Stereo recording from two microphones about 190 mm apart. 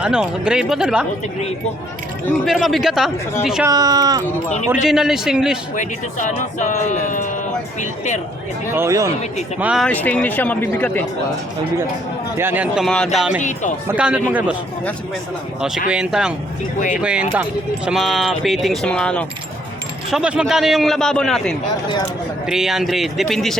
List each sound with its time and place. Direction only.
0.0 s a man's voice: 5° right (ahead or behind)
2.4 s a man's voice: centre (ahead or behind)
3.7 s speech: 20° right (ahead or behind)
4.7 s a man's voice: centre (ahead or behind)
5.7 s speech: 40° left (ahead or behind)
8.7 s speech: 15° right (ahead or behind)
9.8 s speech: 10° left (ahead or behind)
12.4 s a man's voice: 10° right (ahead or behind)
13.4 s speech: 40° left (ahead or behind)
13.8 s speech: 5° right (ahead or behind)
15.9 s a man's voice: 5° right (ahead or behind)